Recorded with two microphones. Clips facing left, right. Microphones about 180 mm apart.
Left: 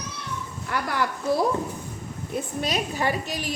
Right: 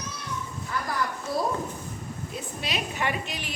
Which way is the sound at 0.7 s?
75° left (ahead or behind).